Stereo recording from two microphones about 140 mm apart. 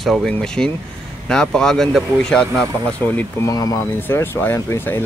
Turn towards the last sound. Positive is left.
turn(degrees=15)  # may be behind; listen again after turning